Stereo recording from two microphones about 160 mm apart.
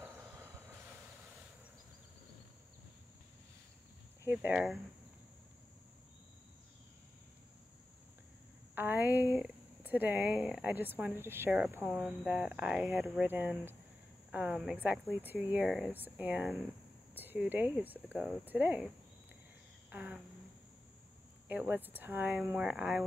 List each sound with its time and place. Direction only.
0.0 s train: 15° right (ahead or behind)
4.3 s speech: 10° right (ahead or behind)
8.7 s speech: 10° right (ahead or behind)
19.9 s a sound: 10° right (ahead or behind)
21.5 s speech: 10° right (ahead or behind)